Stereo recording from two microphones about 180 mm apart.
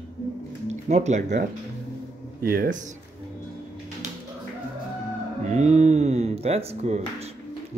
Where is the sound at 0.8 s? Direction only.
40° right (ahead or behind).